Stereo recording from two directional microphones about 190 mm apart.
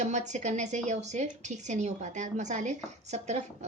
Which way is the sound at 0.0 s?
40° right (ahead or behind).